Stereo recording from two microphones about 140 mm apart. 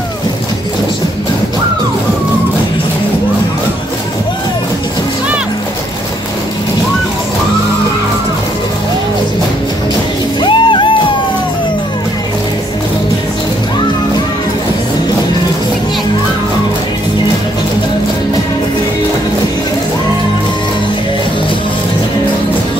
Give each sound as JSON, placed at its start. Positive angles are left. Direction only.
{"t": 10.4, "sound": "music", "side_deg": 35}